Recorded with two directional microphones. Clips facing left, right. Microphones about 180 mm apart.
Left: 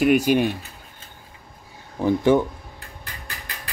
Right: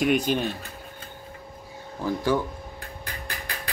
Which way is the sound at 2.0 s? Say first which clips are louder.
Left 7 dB; 20° left (ahead or behind).